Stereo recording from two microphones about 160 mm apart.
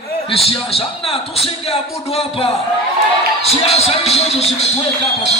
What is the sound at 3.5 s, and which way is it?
Speech, 40° left (ahead or behind).